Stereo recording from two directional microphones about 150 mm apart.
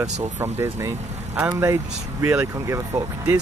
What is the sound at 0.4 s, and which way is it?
Speech, 15° right (ahead or behind).